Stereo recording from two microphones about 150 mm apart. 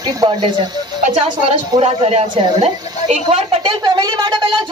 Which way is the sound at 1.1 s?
40° right (ahead or behind).